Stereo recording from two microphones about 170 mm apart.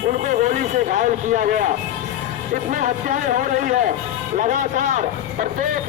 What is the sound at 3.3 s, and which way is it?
Speech, 50° right (ahead or behind).